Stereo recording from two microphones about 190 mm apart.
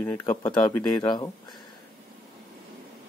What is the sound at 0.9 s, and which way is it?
Speech, 20° left (ahead or behind).